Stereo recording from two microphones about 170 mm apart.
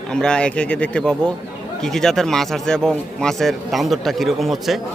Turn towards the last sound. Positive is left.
turn(degrees=0)  # may be behind; listen again after turning